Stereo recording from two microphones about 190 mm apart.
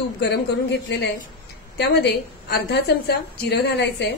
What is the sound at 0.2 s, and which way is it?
Speech, 60° left (ahead or behind).